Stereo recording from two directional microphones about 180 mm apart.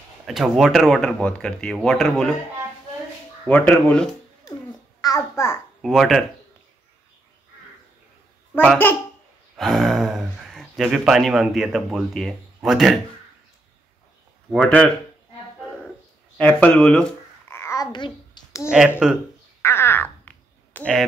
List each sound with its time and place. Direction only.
0.3 s speech: centre (ahead or behind)
3.4 s speech: 5° left (ahead or behind)
5.0 s speech: 15° left (ahead or behind)
5.8 s speech: centre (ahead or behind)
8.5 s speech: 10° left (ahead or behind)
14.5 s speech: 5° left (ahead or behind)
16.3 s babbling: 5° left (ahead or behind)
19.0 s speech: 5° right (ahead or behind)
19.6 s a sound: 15° left (ahead or behind)